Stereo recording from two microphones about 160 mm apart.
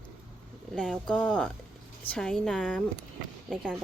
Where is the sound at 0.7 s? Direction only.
5° left (ahead or behind).